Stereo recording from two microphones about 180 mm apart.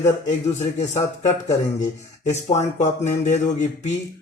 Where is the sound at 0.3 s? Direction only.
40° left (ahead or behind).